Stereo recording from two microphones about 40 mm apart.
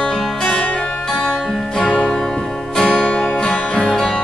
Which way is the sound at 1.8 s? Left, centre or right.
Left.